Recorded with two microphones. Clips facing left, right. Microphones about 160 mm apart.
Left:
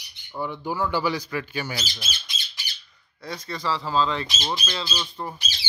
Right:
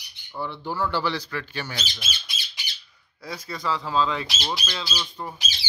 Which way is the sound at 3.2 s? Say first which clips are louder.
Left 1 dB; centre (ahead or behind).